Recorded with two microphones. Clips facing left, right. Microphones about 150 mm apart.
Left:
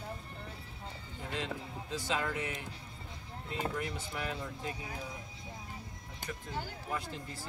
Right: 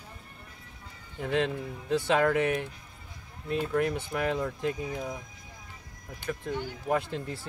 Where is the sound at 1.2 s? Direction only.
65° right (ahead or behind).